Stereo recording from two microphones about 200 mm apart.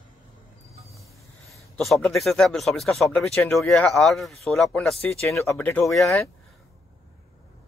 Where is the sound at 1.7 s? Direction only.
Centre (ahead or behind).